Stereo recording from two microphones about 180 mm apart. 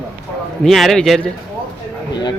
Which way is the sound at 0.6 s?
Centre (ahead or behind).